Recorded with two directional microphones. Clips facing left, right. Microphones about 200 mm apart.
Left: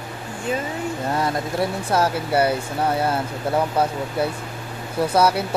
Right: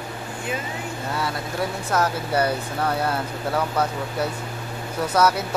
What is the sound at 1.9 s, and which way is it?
Speech, 30° left (ahead or behind).